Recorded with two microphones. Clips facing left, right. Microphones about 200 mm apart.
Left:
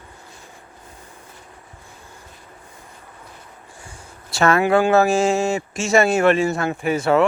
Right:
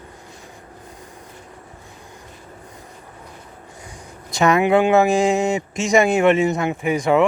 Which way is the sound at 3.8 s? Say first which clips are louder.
Right 3 dB; 15° right (ahead or behind).